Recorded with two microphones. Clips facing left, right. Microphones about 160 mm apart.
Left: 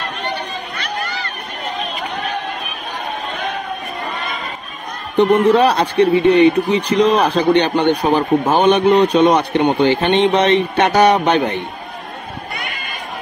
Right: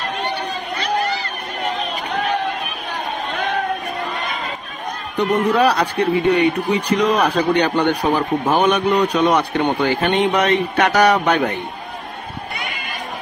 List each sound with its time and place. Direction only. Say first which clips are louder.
5.1 s speech: left 6 dB; 25° left (ahead or behind)